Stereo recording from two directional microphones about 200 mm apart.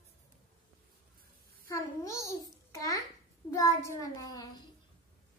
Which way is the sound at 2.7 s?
15° left (ahead or behind).